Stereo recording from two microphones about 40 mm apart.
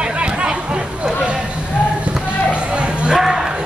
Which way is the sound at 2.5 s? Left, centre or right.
Right.